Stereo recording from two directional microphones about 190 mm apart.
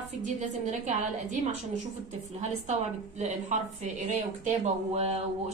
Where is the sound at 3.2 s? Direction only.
40° right (ahead or behind).